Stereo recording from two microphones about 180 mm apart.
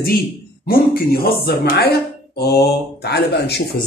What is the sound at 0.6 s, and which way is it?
Speech, 55° left (ahead or behind).